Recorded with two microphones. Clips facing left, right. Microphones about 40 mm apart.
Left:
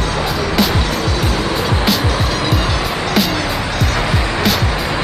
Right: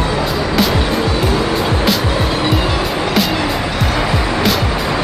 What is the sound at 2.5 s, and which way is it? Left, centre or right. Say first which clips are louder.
Music: right 2 dB; centre.